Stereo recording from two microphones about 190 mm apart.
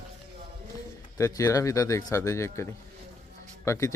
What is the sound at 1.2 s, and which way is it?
Speech, 15° left (ahead or behind).